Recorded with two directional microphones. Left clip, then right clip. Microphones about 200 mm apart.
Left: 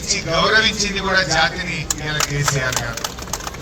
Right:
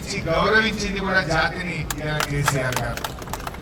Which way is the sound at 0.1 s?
60° right (ahead or behind).